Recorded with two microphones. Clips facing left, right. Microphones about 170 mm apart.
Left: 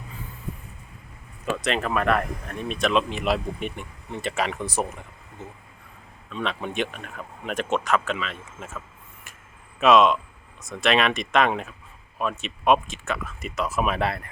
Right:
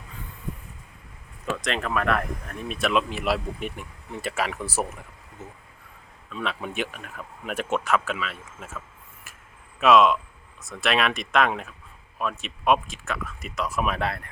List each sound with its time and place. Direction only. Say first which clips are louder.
1.6 s speech: left 2 dB; centre (ahead or behind)
9.8 s speech: left 1 dB; centre (ahead or behind)